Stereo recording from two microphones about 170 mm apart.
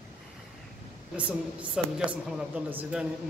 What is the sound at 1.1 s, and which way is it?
A woman's voice, 10° right (ahead or behind).